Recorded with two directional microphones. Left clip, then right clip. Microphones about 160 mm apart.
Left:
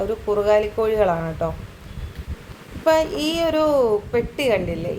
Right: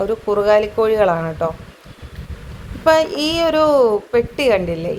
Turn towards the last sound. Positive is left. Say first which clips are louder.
# right 5 dB
turn(degrees=-20)  # may be behind; listen again after turning